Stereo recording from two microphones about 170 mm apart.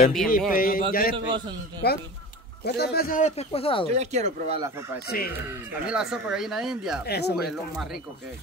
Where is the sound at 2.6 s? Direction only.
70° left (ahead or behind).